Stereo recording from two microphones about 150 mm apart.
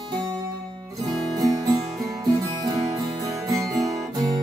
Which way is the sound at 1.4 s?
25° right (ahead or behind).